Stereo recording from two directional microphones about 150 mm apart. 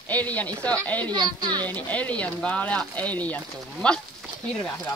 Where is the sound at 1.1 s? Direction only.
30° right (ahead or behind).